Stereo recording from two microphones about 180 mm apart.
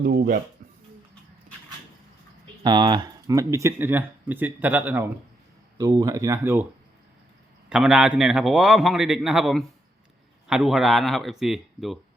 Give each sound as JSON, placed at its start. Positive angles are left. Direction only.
{"t": 0.0, "sound": "speech", "side_deg": -55}
{"t": 2.6, "sound": "speech", "side_deg": -25}
{"t": 5.7, "sound": "speech", "side_deg": -20}
{"t": 7.7, "sound": "a man's voice", "side_deg": -5}